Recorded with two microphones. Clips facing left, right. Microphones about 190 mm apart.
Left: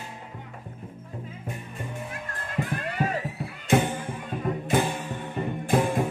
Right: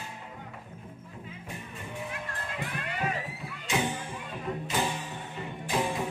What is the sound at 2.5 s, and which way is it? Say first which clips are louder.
Music: left 9 dB; 45° left (ahead or behind).